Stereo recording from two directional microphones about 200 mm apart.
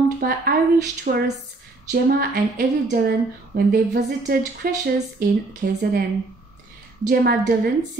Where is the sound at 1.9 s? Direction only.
60° right (ahead or behind).